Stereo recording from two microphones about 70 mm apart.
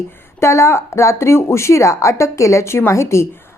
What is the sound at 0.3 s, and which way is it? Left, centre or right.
A woman's voice, left.